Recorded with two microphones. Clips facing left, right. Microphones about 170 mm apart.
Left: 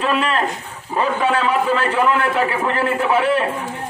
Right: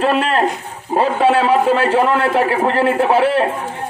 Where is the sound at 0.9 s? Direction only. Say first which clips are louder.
Right 5 dB; 50° right (ahead or behind).